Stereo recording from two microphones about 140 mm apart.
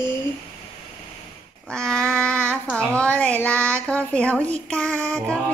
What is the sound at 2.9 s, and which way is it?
Child singing, 10° left (ahead or behind).